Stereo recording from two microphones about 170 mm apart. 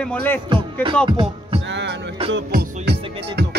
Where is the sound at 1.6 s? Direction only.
90° right.